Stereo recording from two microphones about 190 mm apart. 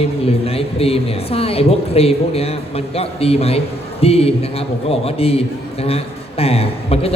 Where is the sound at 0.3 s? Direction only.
30° left (ahead or behind).